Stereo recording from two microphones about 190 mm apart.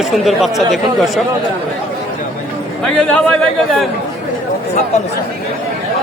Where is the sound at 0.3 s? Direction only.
Centre (ahead or behind).